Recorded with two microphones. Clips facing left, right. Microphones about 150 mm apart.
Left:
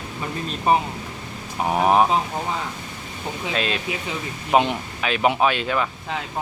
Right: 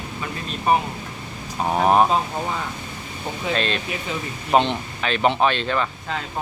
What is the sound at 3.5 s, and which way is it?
Speech, 5° left (ahead or behind).